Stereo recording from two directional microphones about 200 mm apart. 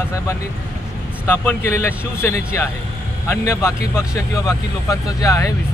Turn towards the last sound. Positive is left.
turn(degrees=15)  # may be behind; listen again after turning